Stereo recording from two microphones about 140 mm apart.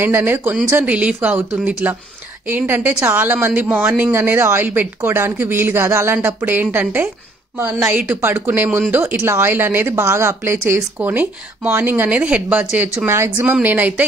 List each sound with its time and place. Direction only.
0.0 s speech: 15° right (ahead or behind)